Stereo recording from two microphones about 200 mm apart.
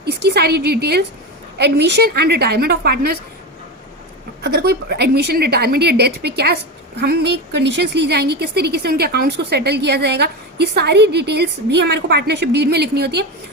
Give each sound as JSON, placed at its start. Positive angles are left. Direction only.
{"t": 0.0, "sound": "a woman's voice", "side_deg": -55}
{"t": 4.4, "sound": "a woman's voice", "side_deg": -55}